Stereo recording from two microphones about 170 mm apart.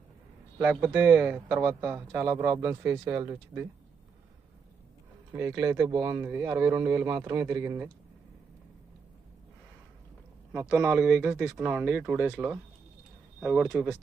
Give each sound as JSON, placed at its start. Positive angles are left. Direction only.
{"t": 0.6, "sound": "speech", "side_deg": -10}
{"t": 5.3, "sound": "speech", "side_deg": -20}
{"t": 10.5, "sound": "speech", "side_deg": -10}